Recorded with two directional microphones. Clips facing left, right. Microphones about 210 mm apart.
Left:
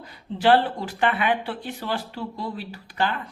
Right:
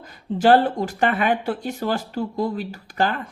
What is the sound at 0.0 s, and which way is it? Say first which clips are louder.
A woman's voice: right 3 dB; 45° right (ahead or behind).